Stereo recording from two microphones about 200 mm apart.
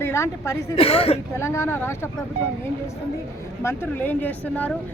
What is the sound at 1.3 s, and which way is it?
Speech, 15° left (ahead or behind).